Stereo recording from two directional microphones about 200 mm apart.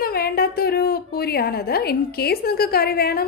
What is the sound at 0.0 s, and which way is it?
A woman's voice, 50° left (ahead or behind).